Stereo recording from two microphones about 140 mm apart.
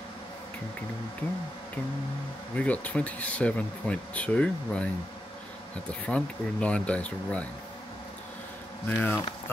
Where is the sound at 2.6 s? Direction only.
10° left (ahead or behind).